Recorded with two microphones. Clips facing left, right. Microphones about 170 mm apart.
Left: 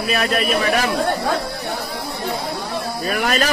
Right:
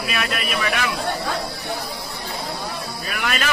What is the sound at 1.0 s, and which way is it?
Speech, 50° left (ahead or behind).